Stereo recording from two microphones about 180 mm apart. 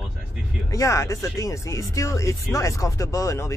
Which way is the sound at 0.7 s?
15° left (ahead or behind).